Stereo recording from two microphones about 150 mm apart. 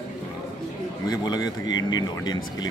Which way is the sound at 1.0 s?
25° left (ahead or behind).